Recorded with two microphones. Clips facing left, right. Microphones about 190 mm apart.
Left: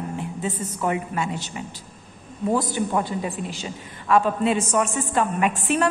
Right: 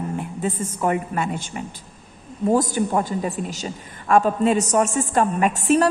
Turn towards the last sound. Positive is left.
turn(degrees=-40)  # may be behind; listen again after turning